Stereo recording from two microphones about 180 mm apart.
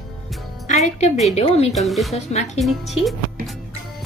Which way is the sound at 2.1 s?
40° left (ahead or behind).